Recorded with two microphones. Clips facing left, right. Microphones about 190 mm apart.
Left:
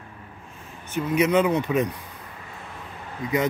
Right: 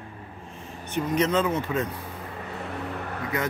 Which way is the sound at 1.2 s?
15° left (ahead or behind).